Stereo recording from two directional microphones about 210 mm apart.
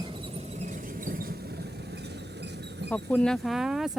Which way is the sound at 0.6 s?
40° right (ahead or behind).